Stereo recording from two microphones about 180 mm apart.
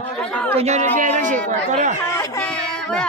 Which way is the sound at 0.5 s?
40° right (ahead or behind).